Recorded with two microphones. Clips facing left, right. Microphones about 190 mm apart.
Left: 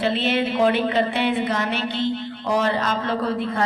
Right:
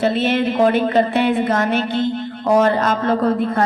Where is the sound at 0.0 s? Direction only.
45° right (ahead or behind).